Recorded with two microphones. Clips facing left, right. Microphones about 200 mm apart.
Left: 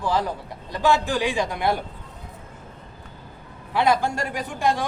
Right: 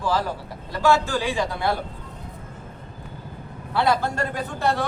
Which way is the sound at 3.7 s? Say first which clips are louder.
Left 1 dB; 15° left (ahead or behind).